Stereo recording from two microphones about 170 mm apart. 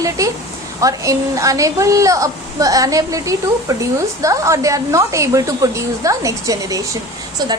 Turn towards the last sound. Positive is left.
turn(degrees=-20)  # may be behind; listen again after turning